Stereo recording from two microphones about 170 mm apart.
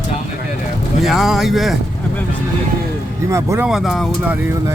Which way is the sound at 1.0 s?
Centre (ahead or behind).